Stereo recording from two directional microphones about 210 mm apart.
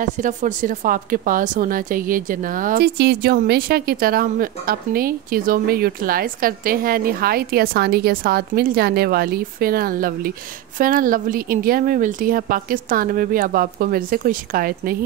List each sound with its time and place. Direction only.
0.0 s a woman's voice: 35° right (ahead or behind)